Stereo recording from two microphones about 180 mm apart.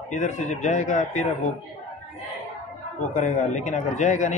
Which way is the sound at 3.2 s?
45° left (ahead or behind).